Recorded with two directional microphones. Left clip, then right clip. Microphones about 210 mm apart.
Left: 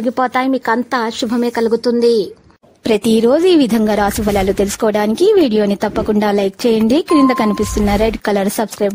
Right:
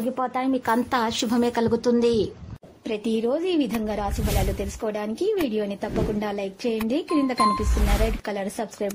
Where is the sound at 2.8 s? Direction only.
60° left (ahead or behind).